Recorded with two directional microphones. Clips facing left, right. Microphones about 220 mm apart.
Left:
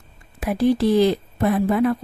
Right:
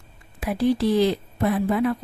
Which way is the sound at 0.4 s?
45° left (ahead or behind).